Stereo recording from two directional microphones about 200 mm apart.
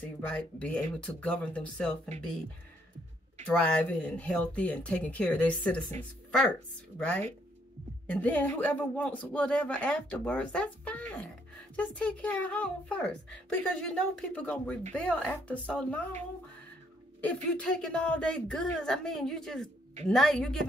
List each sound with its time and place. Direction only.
0.3 s a woman's voice: 5° left (ahead or behind)
3.4 s speech: 5° left (ahead or behind)
7.0 s a woman's voice: 5° left (ahead or behind)
17.2 s a woman's voice: 5° left (ahead or behind)